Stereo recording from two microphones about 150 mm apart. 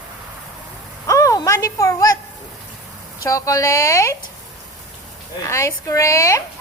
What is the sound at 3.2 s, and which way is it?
Speech, 20° left (ahead or behind).